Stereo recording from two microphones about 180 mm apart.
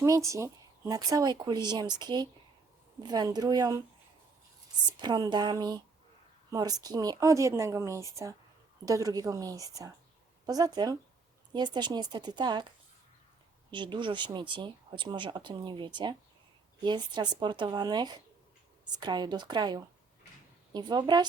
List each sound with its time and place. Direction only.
0.0 s speech: 15° right (ahead or behind)
4.9 s speech: 25° right (ahead or behind)
13.7 s speech: 25° right (ahead or behind)